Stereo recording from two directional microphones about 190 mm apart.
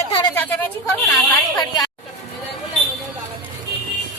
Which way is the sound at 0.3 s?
10° left (ahead or behind).